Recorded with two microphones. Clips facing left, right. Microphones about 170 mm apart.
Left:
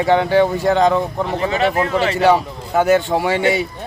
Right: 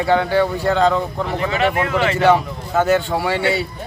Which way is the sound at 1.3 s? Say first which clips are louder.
Left 1 dB; 35° left (ahead or behind).